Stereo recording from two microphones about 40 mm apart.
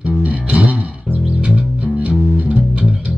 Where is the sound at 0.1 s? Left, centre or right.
Right.